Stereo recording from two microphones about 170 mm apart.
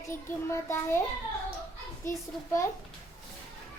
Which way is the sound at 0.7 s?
15° left (ahead or behind).